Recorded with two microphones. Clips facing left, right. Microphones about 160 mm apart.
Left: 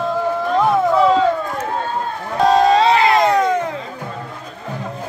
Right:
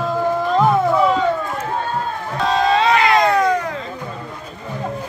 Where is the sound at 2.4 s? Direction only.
40° left (ahead or behind); by 3.6 s 25° left (ahead or behind).